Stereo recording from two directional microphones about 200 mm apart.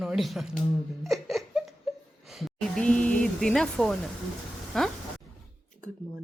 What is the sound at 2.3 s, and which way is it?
Speech, centre (ahead or behind).